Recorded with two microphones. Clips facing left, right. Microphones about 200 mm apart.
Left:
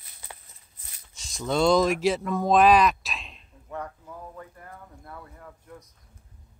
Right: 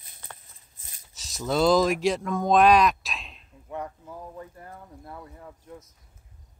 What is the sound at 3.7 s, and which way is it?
Speech, 20° right (ahead or behind).